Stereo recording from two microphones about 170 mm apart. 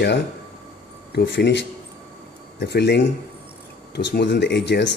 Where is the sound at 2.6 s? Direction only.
80° left.